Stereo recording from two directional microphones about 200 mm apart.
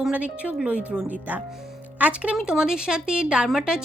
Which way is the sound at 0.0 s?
5° right (ahead or behind).